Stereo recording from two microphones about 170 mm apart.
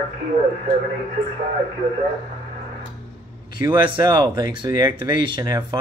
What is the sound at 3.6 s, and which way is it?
Speech, 30° right (ahead or behind).